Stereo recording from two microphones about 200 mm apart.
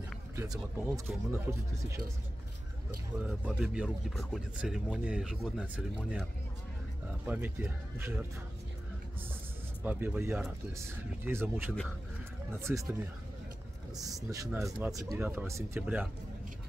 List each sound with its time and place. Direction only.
0.4 s speech: 15° right (ahead or behind)
3.3 s speech: 5° right (ahead or behind)
7.2 s speech: 10° right (ahead or behind)
9.8 s speech: 10° right (ahead or behind)
14.0 s speech: 15° right (ahead or behind)